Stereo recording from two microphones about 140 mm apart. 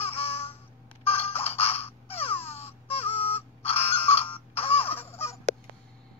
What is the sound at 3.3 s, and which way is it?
Crow, 15° left (ahead or behind).